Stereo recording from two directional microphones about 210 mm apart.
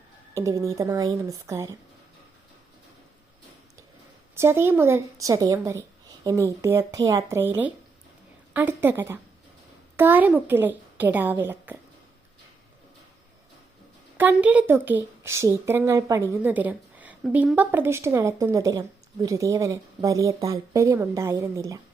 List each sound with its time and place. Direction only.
0.3 s speech: 15° right (ahead or behind)
4.4 s speech: 10° right (ahead or behind)
14.2 s speech: 10° right (ahead or behind)